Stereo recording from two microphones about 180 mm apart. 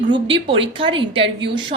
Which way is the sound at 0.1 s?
30° right (ahead or behind).